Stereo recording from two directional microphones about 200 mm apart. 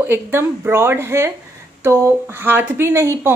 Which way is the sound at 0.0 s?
10° right (ahead or behind).